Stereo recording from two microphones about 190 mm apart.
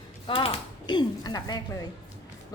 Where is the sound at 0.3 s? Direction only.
25° left (ahead or behind).